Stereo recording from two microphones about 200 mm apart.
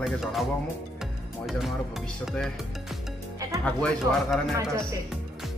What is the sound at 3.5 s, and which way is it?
Speech, centre (ahead or behind).